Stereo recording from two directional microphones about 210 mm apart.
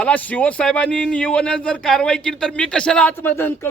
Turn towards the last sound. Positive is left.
turn(degrees=10)  # may be behind; listen again after turning